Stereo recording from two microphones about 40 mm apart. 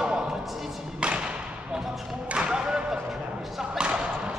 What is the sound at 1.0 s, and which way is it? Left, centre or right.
Thump, right.